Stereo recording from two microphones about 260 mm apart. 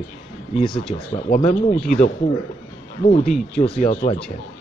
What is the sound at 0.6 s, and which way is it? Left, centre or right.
Speech, centre.